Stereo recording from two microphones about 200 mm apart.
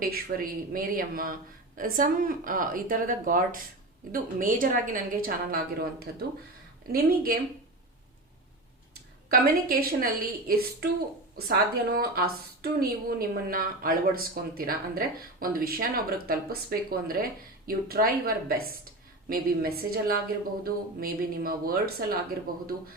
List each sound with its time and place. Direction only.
0.0 s a woman's voice: 45° right (ahead or behind)
8.9 s a woman's voice: 50° right (ahead or behind)